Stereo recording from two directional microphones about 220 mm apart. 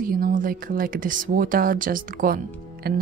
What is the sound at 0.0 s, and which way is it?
Speech, 40° right (ahead or behind).